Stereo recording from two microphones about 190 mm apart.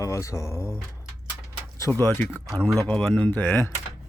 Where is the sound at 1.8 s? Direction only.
10° left (ahead or behind).